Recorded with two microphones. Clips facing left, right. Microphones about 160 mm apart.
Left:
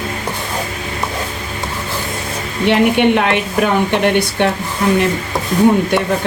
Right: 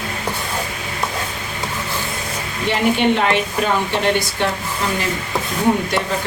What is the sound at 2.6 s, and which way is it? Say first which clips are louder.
A woman's voice: left 5 dB; 65° left (ahead or behind).